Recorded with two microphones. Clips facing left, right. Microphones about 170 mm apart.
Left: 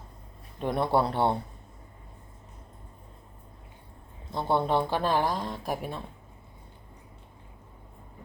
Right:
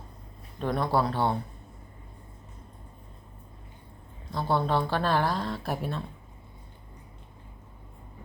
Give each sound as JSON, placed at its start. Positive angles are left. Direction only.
{"t": 0.6, "sound": "speech", "side_deg": 20}
{"t": 4.3, "sound": "speech", "side_deg": 20}